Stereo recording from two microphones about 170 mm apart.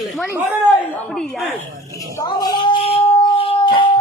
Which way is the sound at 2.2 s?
20° left (ahead or behind).